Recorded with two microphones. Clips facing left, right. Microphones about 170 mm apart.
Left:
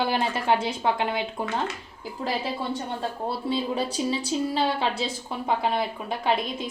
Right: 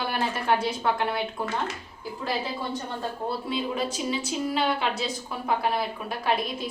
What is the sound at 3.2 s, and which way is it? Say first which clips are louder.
A woman's voice: left 2 dB; 30° left (ahead or behind).